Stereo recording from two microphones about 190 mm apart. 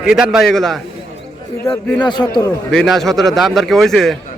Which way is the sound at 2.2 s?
15° left (ahead or behind).